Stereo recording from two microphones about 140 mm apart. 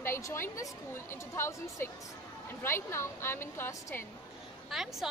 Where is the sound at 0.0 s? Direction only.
20° left (ahead or behind).